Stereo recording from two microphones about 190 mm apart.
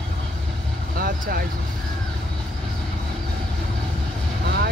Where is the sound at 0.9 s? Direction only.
50° right (ahead or behind).